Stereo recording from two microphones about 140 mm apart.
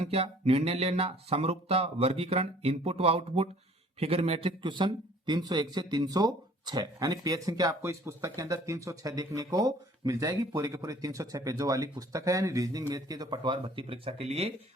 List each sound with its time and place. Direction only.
0.0 s a man's voice: 45° right (ahead or behind)